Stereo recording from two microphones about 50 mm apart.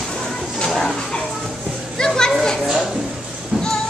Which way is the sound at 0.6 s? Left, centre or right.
Centre.